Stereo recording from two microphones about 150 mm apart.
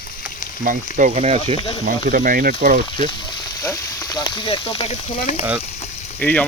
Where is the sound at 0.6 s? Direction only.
60° right (ahead or behind).